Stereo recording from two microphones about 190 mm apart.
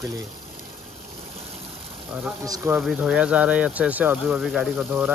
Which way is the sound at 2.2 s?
10° right (ahead or behind).